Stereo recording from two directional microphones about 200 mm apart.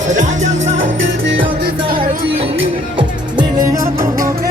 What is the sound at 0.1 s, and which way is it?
Music, 35° right (ahead or behind).